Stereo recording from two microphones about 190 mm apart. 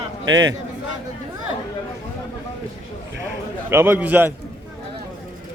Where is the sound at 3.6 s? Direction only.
10° right (ahead or behind).